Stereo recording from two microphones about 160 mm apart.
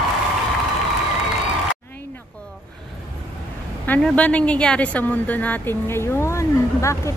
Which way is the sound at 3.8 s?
5° left (ahead or behind).